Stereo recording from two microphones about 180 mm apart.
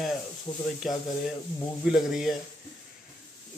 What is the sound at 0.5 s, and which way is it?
Speech, 5° left (ahead or behind).